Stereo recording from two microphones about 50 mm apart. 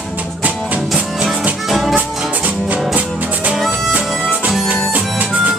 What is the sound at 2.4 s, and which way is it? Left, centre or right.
Music, right.